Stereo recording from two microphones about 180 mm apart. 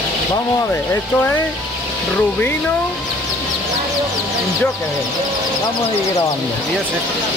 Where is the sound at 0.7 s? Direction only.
10° left (ahead or behind).